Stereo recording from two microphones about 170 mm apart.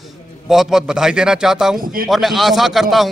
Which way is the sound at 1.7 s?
55° right (ahead or behind).